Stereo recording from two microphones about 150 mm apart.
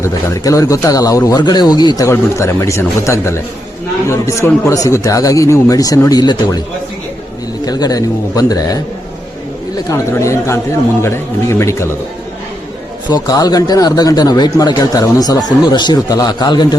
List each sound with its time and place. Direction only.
0.0 s a man's voice: 20° left (ahead or behind)
7.6 s a man's voice: 25° left (ahead or behind)
9.9 s a man's voice: 20° left (ahead or behind)
13.1 s a man's voice: 25° left (ahead or behind)